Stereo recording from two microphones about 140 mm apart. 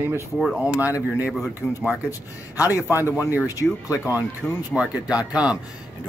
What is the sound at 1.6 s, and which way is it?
Speech, 20° left (ahead or behind).